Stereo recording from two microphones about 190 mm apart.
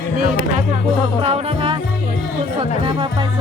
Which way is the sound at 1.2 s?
30° right (ahead or behind).